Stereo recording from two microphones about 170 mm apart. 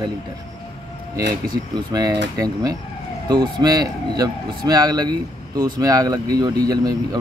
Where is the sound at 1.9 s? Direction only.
20° right (ahead or behind).